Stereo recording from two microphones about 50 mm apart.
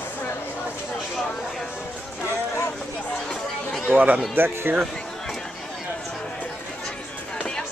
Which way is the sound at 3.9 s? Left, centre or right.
Right.